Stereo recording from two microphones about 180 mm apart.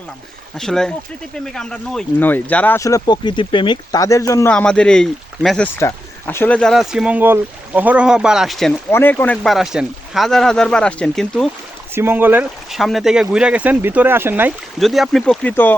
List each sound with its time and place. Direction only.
0.5 s speech: 5° left (ahead or behind)
4.5 s speech: 5° left (ahead or behind)
8.9 s speech: 10° left (ahead or behind)
11.9 s speech: 10° right (ahead or behind)
14.8 s speech: centre (ahead or behind)